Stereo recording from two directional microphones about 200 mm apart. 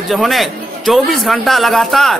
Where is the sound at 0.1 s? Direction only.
Centre (ahead or behind).